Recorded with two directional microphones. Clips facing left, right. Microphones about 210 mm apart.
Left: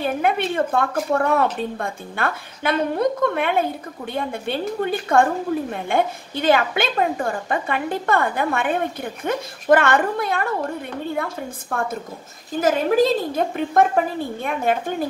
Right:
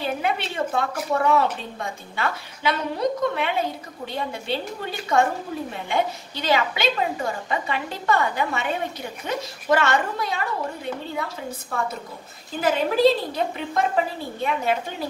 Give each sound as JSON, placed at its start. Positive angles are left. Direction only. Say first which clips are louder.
{"t": 0.0, "sound": "a woman's voice", "louder": "left 5 dB", "side_deg": 50}